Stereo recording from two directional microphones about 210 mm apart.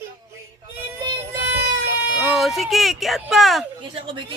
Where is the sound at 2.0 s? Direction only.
5° right (ahead or behind).